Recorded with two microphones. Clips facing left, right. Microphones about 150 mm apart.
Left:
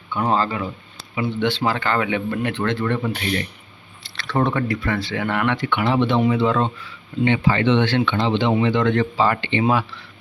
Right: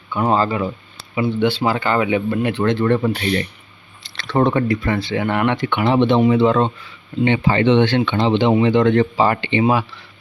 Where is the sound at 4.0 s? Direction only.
20° right (ahead or behind).